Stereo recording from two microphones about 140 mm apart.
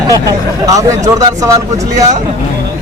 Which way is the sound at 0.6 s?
25° right (ahead or behind).